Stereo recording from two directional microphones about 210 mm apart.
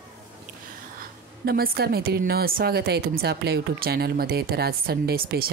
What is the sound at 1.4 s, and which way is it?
A woman's voice, 45° right (ahead or behind).